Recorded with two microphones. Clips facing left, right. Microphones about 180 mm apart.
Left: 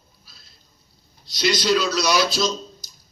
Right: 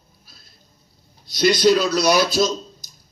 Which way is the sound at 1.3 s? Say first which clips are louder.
Right 5 dB; 50° right (ahead or behind).